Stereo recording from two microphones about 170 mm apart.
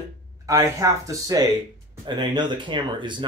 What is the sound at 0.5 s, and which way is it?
Speech, 20° right (ahead or behind).